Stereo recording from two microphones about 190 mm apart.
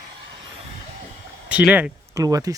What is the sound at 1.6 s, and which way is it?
Speech, 10° right (ahead or behind).